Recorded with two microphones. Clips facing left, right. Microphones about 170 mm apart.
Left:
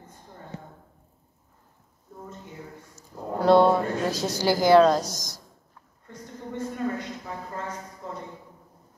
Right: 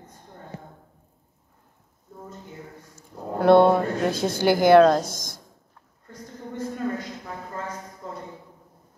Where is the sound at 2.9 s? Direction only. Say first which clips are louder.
Right 1 dB; 55° right (ahead or behind).